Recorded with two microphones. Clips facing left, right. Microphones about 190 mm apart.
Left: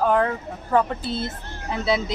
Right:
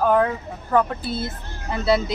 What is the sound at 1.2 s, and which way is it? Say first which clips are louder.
Speech: even; 20° left (ahead or behind).